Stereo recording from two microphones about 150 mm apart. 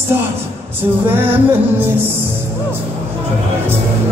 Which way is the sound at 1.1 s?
15° right (ahead or behind).